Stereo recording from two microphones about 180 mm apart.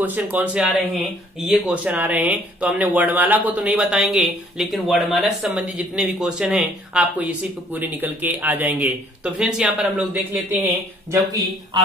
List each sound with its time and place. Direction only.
0.0 s speech: 10° right (ahead or behind)